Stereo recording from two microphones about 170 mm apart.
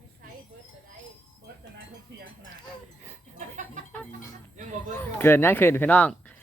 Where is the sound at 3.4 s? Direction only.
50° right (ahead or behind).